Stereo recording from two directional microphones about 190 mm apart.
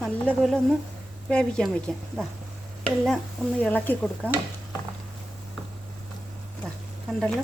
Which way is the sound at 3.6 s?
10° left (ahead or behind).